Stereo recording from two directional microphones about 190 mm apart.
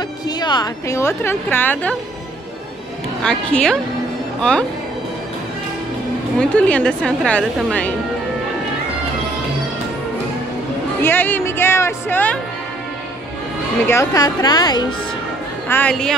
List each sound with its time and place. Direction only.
0.4 s a woman's voice: 20° left (ahead or behind)
3.2 s a woman's voice: 5° left (ahead or behind)
6.5 s a woman's voice: 5° left (ahead or behind)
11.0 s a woman's voice: 10° left (ahead or behind)
13.8 s a woman's voice: 15° left (ahead or behind)
15.7 s a woman's voice: 5° left (ahead or behind)